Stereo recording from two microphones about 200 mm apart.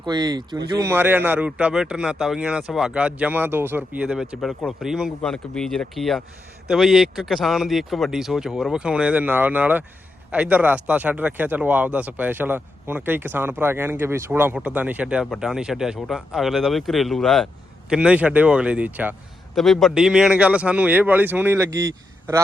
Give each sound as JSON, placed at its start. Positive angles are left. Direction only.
{"t": 0.0, "sound": "a man's voice", "side_deg": -20}